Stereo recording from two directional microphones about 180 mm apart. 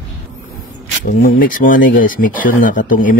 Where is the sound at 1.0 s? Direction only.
50° left (ahead or behind).